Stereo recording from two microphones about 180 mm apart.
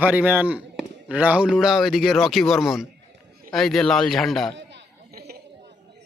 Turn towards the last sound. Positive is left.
turn(degrees=-60)  # may be behind; listen again after turning